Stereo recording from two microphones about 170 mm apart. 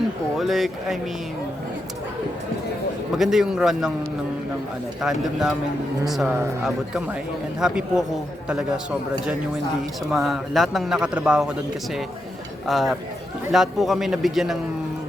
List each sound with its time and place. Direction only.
0.3 s speech: centre (ahead or behind)
3.2 s speech: centre (ahead or behind)
4.9 s speech: 5° right (ahead or behind)
6.7 s speech: 5° right (ahead or behind)
10.1 s speech: centre (ahead or behind)
12.6 s speech: centre (ahead or behind)